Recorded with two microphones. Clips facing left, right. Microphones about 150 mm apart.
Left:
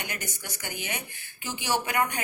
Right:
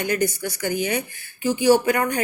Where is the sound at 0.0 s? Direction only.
35° right (ahead or behind).